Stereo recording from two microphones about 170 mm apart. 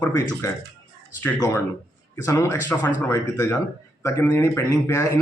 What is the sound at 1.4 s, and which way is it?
A man's voice, 20° left (ahead or behind).